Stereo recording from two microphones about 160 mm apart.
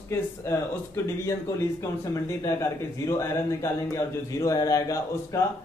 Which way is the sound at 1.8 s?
20° left (ahead or behind).